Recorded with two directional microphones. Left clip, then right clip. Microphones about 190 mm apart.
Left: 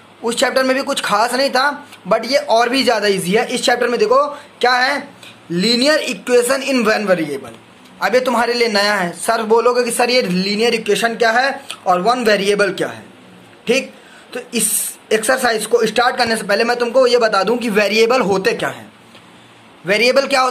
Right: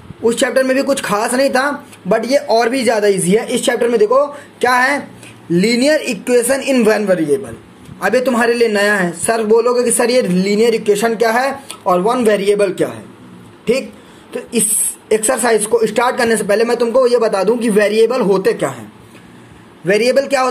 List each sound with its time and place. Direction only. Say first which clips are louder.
0.2 s speech: right 2 dB; centre (ahead or behind)
14.3 s speech: right 2 dB; 20° left (ahead or behind)
19.9 s speech: right 1 dB; 5° left (ahead or behind)